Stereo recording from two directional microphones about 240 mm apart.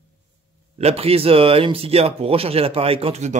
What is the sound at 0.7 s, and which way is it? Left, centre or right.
Speech, right.